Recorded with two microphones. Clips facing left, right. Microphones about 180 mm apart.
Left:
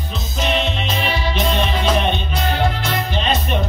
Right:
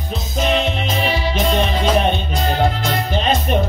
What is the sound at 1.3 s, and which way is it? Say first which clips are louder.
Music: right 1 dB; 45° right (ahead or behind).